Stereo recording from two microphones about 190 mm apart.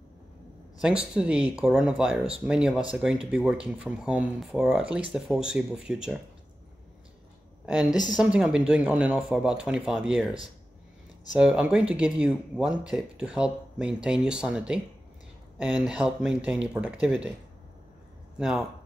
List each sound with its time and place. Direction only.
0.7 s speech: 5° right (ahead or behind)
8.2 s speech: 5° right (ahead or behind)
11.3 s speech: 5° right (ahead or behind)